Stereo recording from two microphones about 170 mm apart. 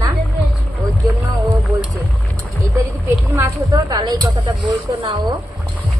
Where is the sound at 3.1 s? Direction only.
15° right (ahead or behind); by 5.2 s 30° right (ahead or behind).